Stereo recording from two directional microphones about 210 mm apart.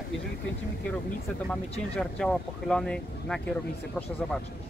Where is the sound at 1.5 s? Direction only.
5° left (ahead or behind).